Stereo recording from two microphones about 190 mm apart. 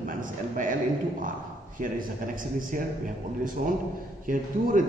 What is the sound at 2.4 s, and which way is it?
A man's voice, 45° right (ahead or behind).